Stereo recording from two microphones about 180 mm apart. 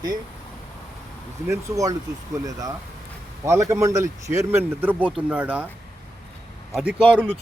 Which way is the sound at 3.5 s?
15° right (ahead or behind).